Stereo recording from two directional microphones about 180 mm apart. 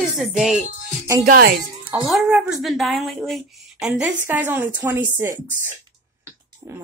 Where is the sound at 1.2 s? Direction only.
50° right (ahead or behind).